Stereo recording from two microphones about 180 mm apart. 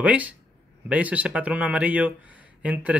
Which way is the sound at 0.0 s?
10° right (ahead or behind).